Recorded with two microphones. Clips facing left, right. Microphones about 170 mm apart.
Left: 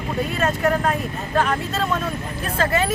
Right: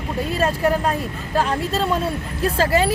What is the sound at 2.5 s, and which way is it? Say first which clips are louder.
Speech: right 2 dB; 30° right (ahead or behind).